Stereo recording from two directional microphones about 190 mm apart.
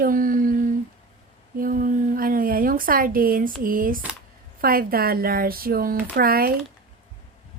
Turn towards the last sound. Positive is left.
turn(degrees=-50)  # may be behind; listen again after turning